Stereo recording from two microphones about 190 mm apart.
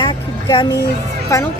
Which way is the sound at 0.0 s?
25° left (ahead or behind).